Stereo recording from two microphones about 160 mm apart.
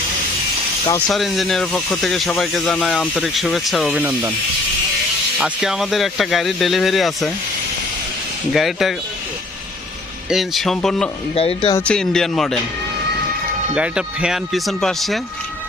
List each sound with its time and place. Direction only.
0.9 s speech: 5° left (ahead or behind)
5.4 s speech: 5° right (ahead or behind)
8.5 s speech: centre (ahead or behind)
10.2 s speech: centre (ahead or behind)
11.3 s speech: 35° left (ahead or behind)
11.9 s speech: 5° left (ahead or behind)
13.7 s speech: 5° right (ahead or behind)